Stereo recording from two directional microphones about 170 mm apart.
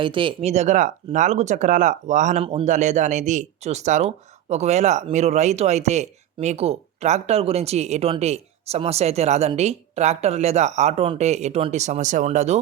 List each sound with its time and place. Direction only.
0.0 s speech: 30° right (ahead or behind)